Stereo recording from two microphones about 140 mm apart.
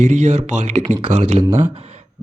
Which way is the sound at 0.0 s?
55° right (ahead or behind).